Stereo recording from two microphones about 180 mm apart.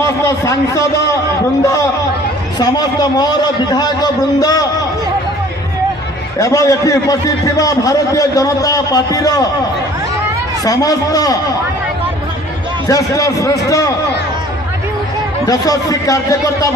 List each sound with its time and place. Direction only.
0.0 s a man's voice: 15° left (ahead or behind)
2.6 s a man's voice: 20° left (ahead or behind)
6.4 s a man's voice: 20° left (ahead or behind)
10.6 s a man's voice: 20° left (ahead or behind)
12.8 s a man's voice: 20° left (ahead or behind)
15.4 s a man's voice: 20° left (ahead or behind)